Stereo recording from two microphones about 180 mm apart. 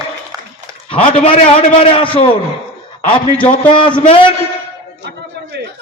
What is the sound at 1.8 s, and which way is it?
Speech, 30° left (ahead or behind).